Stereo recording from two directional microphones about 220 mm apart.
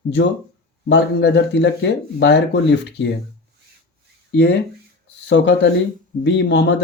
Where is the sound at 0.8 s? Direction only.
50° left (ahead or behind).